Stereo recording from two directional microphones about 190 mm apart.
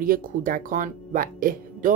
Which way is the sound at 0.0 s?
45° right (ahead or behind).